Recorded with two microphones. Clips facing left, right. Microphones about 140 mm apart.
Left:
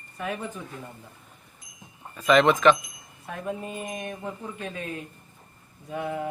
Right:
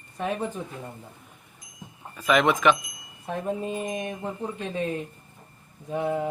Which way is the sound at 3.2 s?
30° right (ahead or behind).